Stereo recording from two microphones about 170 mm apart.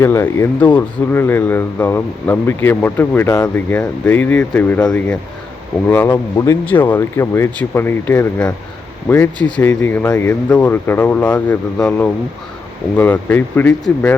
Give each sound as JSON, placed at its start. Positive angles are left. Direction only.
{"t": 0.0, "sound": "speech", "side_deg": 15}